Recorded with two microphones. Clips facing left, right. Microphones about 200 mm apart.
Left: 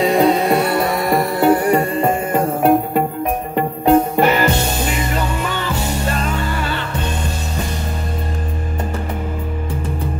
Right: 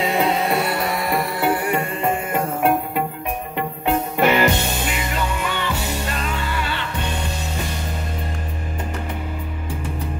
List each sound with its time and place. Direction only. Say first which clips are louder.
0.0 s music: left 6 dB; 40° left (ahead or behind)